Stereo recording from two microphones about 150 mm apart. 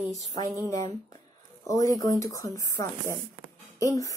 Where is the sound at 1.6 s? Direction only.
25° left (ahead or behind).